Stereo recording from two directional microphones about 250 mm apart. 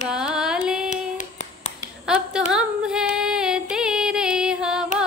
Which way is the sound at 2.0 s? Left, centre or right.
Centre.